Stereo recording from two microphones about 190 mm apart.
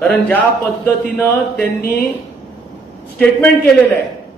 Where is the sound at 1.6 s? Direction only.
55° left (ahead or behind).